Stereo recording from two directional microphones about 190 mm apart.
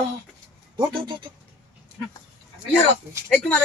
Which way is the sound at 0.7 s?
25° right (ahead or behind).